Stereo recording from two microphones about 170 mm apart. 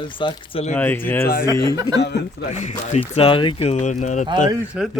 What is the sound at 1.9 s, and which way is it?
Speech, 90° left.